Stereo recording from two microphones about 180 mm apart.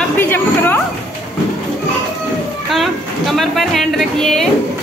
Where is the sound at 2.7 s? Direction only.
Centre (ahead or behind).